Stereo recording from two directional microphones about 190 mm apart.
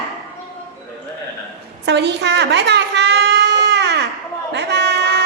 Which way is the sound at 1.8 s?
60° right (ahead or behind).